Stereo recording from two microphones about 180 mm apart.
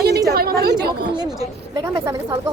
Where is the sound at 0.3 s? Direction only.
60° right (ahead or behind).